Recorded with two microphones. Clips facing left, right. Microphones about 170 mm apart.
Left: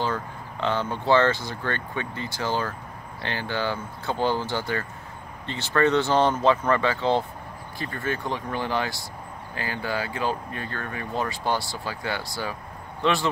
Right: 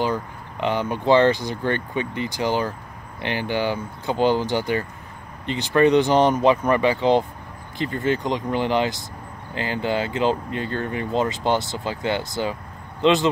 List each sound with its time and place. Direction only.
0.0 s speech: 15° right (ahead or behind)